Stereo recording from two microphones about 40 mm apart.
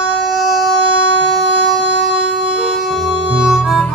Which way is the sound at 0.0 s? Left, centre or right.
Centre.